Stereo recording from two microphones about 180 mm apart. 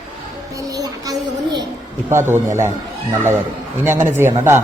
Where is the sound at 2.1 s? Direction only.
15° right (ahead or behind).